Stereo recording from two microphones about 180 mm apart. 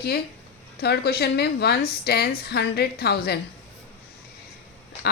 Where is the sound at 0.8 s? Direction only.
65° left (ahead or behind).